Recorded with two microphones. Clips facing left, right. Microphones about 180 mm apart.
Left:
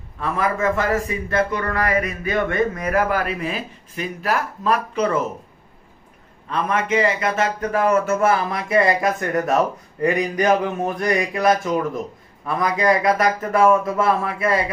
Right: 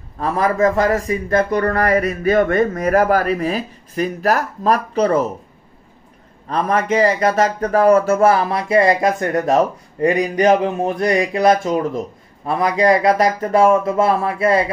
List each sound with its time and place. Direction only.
0.2 s a man's voice: 35° right (ahead or behind)
6.4 s a man's voice: 40° right (ahead or behind)